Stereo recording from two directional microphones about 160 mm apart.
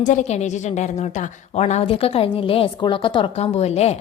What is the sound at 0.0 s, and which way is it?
Speech, 50° left (ahead or behind).